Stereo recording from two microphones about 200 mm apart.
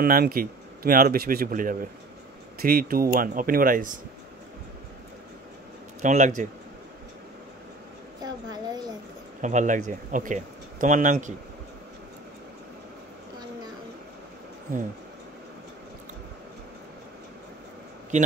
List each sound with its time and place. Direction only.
0.0 s a man's voice: 45° right (ahead or behind)
6.0 s speech: 40° right (ahead or behind)
8.2 s a sound: 20° right (ahead or behind)
9.4 s speech: 40° right (ahead or behind)